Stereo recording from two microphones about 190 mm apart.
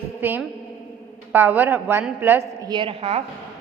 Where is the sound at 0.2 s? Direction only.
10° right (ahead or behind).